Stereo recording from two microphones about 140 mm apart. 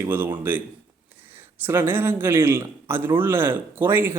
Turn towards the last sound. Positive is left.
turn(degrees=-15)  # may be behind; listen again after turning